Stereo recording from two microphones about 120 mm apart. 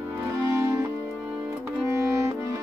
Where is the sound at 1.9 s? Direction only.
25° right (ahead or behind).